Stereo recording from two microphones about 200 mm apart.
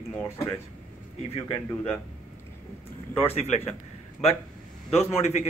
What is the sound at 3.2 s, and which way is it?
Speech, 35° left (ahead or behind).